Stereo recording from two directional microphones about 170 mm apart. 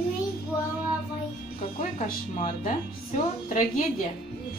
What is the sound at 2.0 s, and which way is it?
Speech, 50° left (ahead or behind).